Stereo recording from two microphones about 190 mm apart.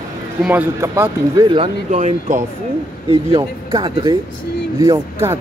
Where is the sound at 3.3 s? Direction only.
20° right (ahead or behind).